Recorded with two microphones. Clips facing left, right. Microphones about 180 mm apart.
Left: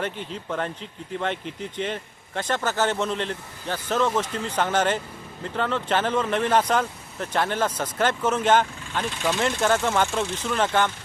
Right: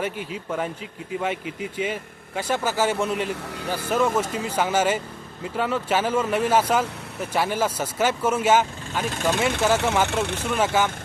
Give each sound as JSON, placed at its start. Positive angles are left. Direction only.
{"t": 0.0, "sound": "speech", "side_deg": -10}